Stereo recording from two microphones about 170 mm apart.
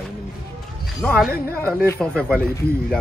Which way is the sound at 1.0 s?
Centre (ahead or behind).